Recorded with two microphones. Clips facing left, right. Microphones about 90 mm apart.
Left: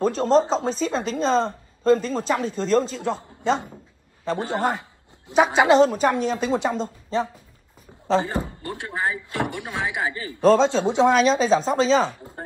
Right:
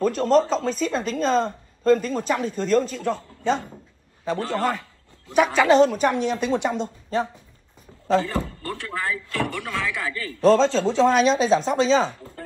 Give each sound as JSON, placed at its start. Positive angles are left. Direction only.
{"t": 0.0, "sound": "speech", "side_deg": 30}
{"t": 8.1, "sound": "speech", "side_deg": 25}
{"t": 11.1, "sound": "speech", "side_deg": 40}